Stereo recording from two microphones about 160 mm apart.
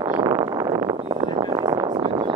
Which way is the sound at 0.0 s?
20° right (ahead or behind).